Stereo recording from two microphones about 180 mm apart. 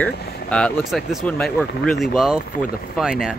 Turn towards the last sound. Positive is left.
turn(degrees=-5)  # may be behind; listen again after turning